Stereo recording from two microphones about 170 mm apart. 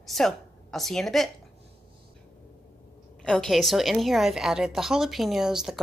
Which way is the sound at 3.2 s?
Centre (ahead or behind).